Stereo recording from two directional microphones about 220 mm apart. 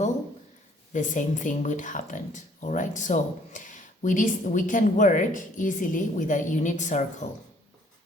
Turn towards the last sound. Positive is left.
turn(degrees=35)  # may be behind; listen again after turning